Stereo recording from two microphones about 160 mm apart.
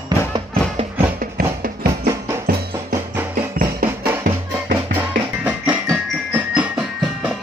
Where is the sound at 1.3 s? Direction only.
70° right (ahead or behind).